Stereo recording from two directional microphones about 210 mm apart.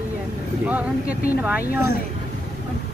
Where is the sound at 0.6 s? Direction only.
5° right (ahead or behind).